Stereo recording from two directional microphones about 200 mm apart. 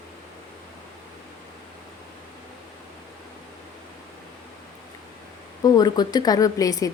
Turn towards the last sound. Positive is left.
turn(degrees=15)  # may be behind; listen again after turning